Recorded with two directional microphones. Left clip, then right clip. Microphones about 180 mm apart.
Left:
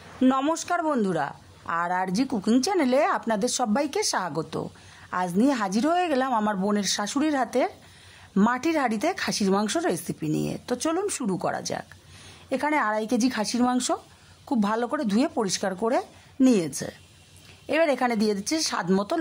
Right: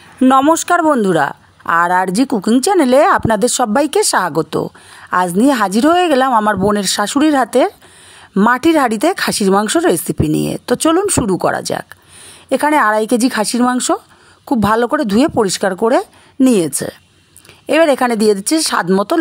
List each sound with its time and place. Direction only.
0.2 s speech: 40° right (ahead or behind)